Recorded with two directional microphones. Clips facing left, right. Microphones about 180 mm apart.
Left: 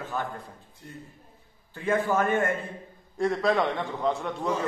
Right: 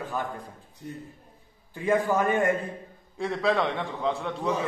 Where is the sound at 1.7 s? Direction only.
15° right (ahead or behind).